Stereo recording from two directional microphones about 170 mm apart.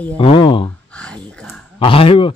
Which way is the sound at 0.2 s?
30° left (ahead or behind).